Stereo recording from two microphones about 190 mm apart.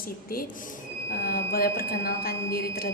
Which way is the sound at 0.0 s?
50° left (ahead or behind).